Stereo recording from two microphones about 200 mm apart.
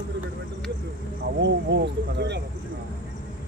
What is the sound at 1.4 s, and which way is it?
Speech, 60° right (ahead or behind).